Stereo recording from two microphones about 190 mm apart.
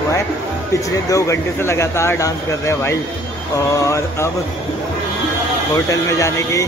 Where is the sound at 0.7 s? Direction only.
15° left (ahead or behind).